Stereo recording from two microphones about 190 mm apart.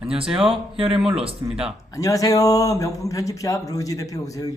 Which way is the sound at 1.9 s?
15° left (ahead or behind).